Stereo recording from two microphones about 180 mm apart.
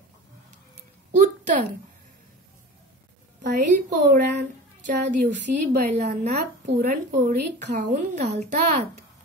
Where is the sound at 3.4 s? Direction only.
45° right (ahead or behind).